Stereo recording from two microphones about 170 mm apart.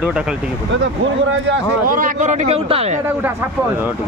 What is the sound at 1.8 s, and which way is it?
Speech, 50° right (ahead or behind).